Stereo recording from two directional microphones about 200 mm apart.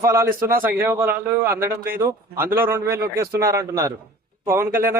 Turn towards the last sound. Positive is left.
turn(degrees=-10)  # may be behind; listen again after turning